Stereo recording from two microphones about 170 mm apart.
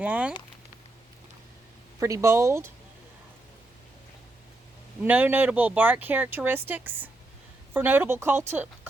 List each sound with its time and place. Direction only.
0.0 s speech: 10° right (ahead or behind)
2.0 s speech: 15° right (ahead or behind)
5.0 s speech: 10° right (ahead or behind)